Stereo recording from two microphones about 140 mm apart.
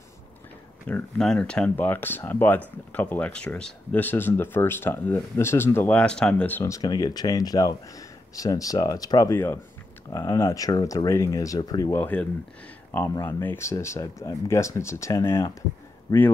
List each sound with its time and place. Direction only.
0.8 s speech: 5° left (ahead or behind)
6.6 s speech: 25° left (ahead or behind)
12.0 s speech: 10° left (ahead or behind)